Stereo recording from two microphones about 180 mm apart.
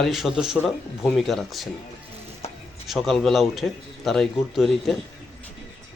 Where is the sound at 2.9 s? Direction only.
Centre (ahead or behind).